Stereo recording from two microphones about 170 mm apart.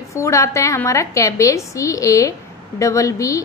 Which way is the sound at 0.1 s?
15° left (ahead or behind).